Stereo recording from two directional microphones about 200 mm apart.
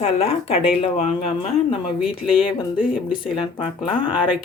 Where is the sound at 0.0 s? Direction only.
30° left (ahead or behind).